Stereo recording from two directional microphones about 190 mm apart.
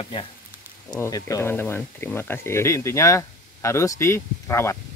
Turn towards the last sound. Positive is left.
turn(degrees=15)  # may be behind; listen again after turning